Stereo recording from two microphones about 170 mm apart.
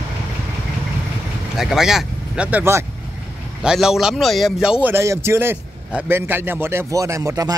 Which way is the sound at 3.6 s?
5° right (ahead or behind).